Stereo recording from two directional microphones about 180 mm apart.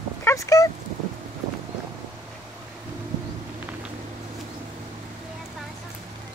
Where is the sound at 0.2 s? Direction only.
15° left (ahead or behind).